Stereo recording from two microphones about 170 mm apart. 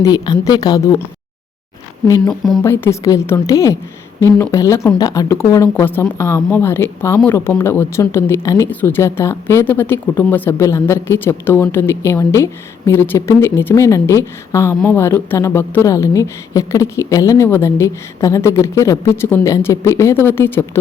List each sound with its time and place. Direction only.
0.0 s a woman's voice: 25° left (ahead or behind)
2.0 s a woman's voice: 25° left (ahead or behind)